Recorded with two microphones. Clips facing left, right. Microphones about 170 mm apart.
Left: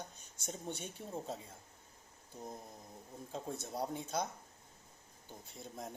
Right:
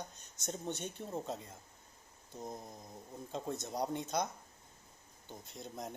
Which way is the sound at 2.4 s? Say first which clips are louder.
Right 3 dB; 15° right (ahead or behind).